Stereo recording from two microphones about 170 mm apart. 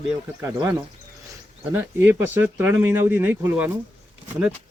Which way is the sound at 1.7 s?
10° right (ahead or behind).